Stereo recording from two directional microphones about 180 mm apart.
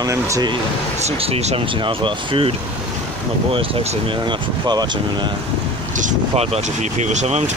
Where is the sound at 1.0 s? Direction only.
35° right (ahead or behind).